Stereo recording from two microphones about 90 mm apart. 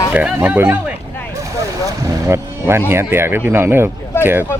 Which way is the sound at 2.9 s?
25° right (ahead or behind).